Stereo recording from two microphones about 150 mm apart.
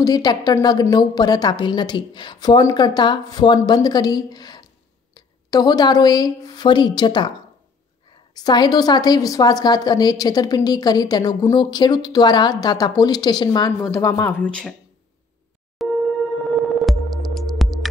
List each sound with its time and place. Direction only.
0.0 s a woman's voice: 25° left (ahead or behind)
8.4 s a woman's voice: 25° left (ahead or behind); by 14.7 s 10° left (ahead or behind)
15.8 s music: centre (ahead or behind)